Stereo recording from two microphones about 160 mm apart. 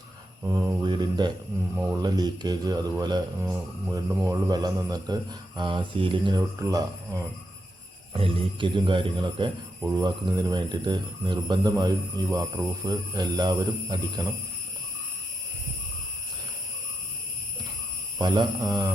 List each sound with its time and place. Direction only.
0.4 s speech: 25° right (ahead or behind)
1.7 s speech: 10° right (ahead or behind)
2.0 s speech: 25° right (ahead or behind)
8.1 s speech: 35° right (ahead or behind)
18.2 s speech: 25° right (ahead or behind)